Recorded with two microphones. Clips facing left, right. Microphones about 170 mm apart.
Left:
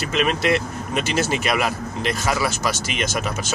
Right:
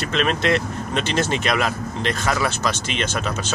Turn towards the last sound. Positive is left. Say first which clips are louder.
# even
turn(degrees=10)  # may be behind; listen again after turning